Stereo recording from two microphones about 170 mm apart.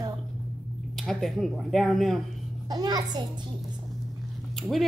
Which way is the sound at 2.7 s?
25° right (ahead or behind).